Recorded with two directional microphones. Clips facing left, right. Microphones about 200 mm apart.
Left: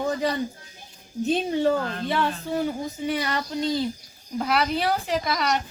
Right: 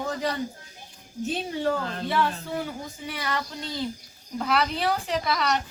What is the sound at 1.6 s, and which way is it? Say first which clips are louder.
A woman's voice: left 4 dB; 20° left (ahead or behind).